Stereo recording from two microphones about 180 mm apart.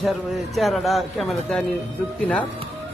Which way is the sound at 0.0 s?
Centre (ahead or behind).